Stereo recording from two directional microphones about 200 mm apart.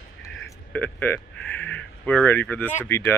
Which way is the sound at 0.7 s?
10° left (ahead or behind).